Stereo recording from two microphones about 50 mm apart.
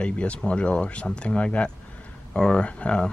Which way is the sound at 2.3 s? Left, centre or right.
Centre.